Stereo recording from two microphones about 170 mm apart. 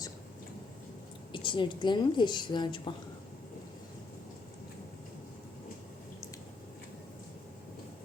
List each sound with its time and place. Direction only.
1.3 s a woman's voice: 30° left (ahead or behind)